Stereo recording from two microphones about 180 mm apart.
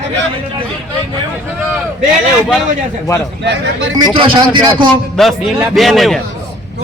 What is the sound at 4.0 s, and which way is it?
Speech, 30° right (ahead or behind).